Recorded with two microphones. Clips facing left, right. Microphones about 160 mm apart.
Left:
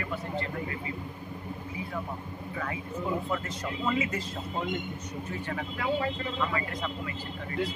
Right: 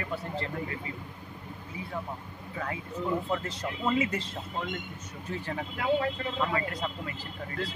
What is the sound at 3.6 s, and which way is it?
Speech, 30° right (ahead or behind).